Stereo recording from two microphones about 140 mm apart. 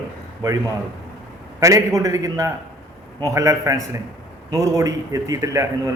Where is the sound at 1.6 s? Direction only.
25° right (ahead or behind).